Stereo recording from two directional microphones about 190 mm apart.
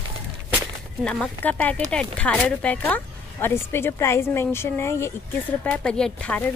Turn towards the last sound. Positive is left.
turn(degrees=5)  # may be behind; listen again after turning